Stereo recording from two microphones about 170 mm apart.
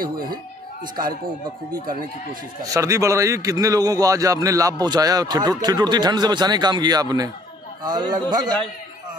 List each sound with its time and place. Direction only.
0.0 s speech: 60° right (ahead or behind)
2.7 s a man's voice: 20° right (ahead or behind)